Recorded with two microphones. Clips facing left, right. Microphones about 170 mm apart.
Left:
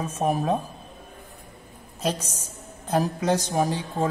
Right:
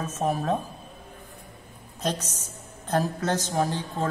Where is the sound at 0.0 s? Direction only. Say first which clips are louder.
Left 2 dB; 10° left (ahead or behind).